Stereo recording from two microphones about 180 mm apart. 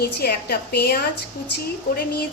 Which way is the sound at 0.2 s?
60° left (ahead or behind).